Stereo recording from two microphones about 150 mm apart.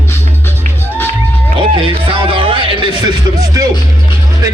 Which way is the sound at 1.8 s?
35° right (ahead or behind).